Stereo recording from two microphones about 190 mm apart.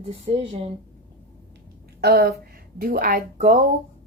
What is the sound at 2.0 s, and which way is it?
Speech, 55° right (ahead or behind).